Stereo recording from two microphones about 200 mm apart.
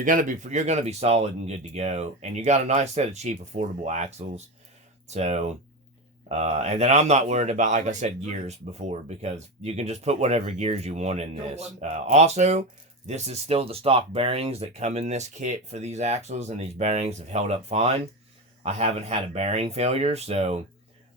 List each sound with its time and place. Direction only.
0.0 s speech: 40° right (ahead or behind)